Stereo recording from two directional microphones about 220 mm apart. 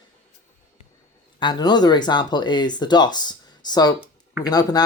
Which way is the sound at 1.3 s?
20° left (ahead or behind).